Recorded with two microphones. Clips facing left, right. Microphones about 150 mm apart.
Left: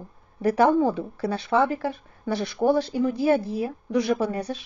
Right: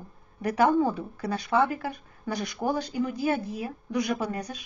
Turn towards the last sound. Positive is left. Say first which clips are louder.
# left 5 dB
turn(degrees=30)  # may be behind; listen again after turning